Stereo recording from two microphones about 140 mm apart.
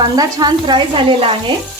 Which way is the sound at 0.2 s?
30° right (ahead or behind).